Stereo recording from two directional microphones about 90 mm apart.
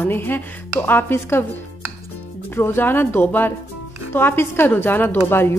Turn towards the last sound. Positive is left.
turn(degrees=25)  # may be behind; listen again after turning